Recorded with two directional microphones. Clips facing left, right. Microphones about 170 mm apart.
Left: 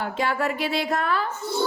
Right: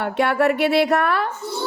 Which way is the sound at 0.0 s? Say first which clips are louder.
Right 6 dB; 65° right (ahead or behind).